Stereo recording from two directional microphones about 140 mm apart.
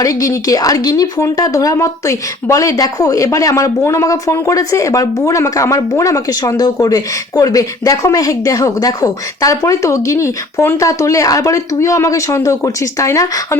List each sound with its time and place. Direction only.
0.0 s speech: 25° left (ahead or behind)